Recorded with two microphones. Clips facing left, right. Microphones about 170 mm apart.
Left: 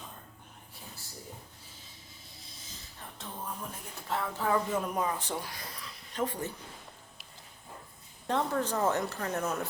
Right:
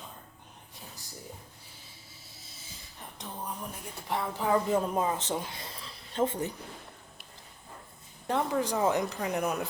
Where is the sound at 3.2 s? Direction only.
20° right (ahead or behind).